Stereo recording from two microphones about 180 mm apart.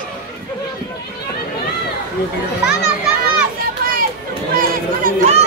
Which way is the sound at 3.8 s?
55° right (ahead or behind).